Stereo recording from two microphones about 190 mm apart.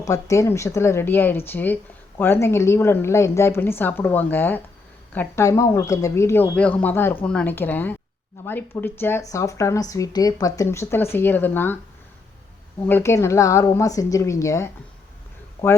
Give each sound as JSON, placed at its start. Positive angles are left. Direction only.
{"t": 0.0, "sound": "speech", "side_deg": 15}
{"t": 12.8, "sound": "speech", "side_deg": 10}